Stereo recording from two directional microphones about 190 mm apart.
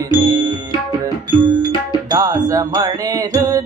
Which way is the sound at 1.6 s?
20° right (ahead or behind).